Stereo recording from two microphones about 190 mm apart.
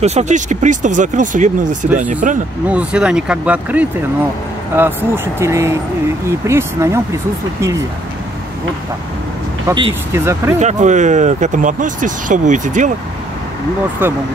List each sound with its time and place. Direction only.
0.0 s speech: 35° right (ahead or behind)
2.7 s speech: 5° right (ahead or behind)
9.7 s speech: 15° right (ahead or behind)
10.6 s speech: 40° right (ahead or behind)